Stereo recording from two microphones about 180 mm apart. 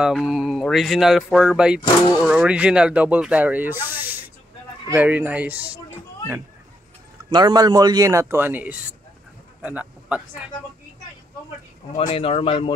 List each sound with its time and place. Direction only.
0.0 s speech: centre (ahead or behind)
7.2 s a man's voice: 25° right (ahead or behind); by 10.5 s 5° right (ahead or behind)
11.9 s speech: 40° left (ahead or behind)